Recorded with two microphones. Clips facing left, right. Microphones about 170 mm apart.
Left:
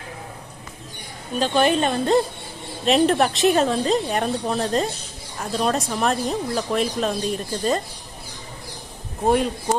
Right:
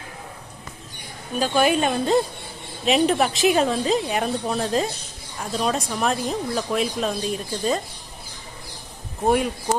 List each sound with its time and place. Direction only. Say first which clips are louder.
1.4 s speech: left 1 dB; 5° right (ahead or behind)
9.2 s speech: left 1 dB; 5° right (ahead or behind)